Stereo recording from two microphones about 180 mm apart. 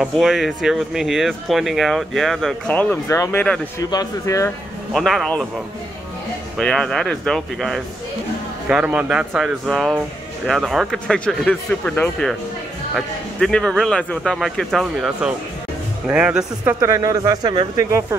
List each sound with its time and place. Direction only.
0.0 s speech: centre (ahead or behind)
3.9 s speech: 20° left (ahead or behind)
4.9 s speech: centre (ahead or behind)
6.6 s speech: 5° left (ahead or behind); by 17.6 s 20° right (ahead or behind)